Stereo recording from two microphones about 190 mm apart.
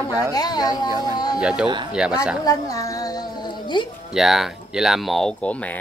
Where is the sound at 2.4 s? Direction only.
20° left (ahead or behind).